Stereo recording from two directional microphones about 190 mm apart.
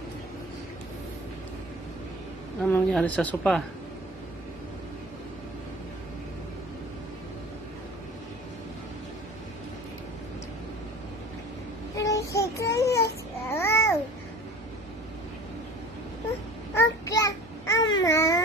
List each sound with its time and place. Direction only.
2.6 s a woman's voice: 5° left (ahead or behind)
12.1 s child singing: 15° left (ahead or behind)
16.7 s babbling: 15° left (ahead or behind)